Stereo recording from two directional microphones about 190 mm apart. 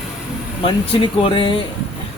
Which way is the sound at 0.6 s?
30° left (ahead or behind).